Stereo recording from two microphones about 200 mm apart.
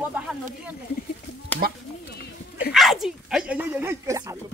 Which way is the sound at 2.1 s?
55° left (ahead or behind).